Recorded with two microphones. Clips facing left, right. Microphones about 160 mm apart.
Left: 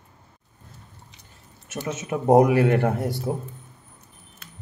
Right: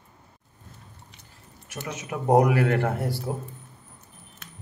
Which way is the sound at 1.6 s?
25° left (ahead or behind).